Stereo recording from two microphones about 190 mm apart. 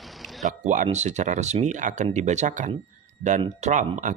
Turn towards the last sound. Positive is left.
turn(degrees=-40)  # may be behind; listen again after turning